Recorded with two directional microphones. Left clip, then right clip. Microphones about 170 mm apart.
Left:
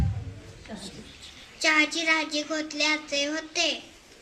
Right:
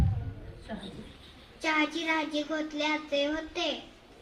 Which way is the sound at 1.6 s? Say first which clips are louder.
Left 6 dB; 20° right (ahead or behind).